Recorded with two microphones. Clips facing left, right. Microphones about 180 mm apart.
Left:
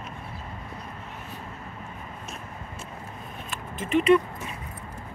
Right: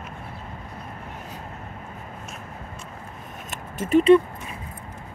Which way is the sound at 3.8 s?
35° right (ahead or behind).